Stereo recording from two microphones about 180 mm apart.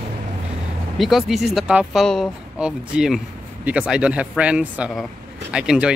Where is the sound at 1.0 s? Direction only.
Centre (ahead or behind).